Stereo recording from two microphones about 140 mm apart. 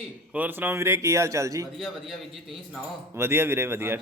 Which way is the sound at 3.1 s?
15° right (ahead or behind).